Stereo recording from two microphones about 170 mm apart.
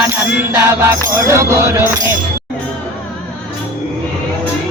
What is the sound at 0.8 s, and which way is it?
Music, 15° right (ahead or behind).